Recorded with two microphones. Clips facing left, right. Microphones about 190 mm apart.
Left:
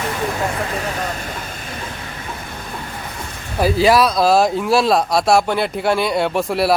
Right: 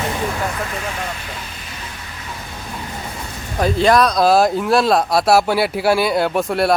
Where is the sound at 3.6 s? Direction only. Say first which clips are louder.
Even; 5° left (ahead or behind).